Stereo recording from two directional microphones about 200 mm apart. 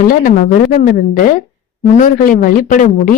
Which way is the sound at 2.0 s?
40° left (ahead or behind).